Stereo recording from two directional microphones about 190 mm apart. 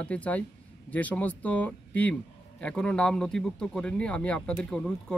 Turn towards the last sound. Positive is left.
turn(degrees=5)  # may be behind; listen again after turning